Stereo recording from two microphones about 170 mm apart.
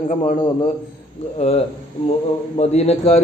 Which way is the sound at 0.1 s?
45° left (ahead or behind).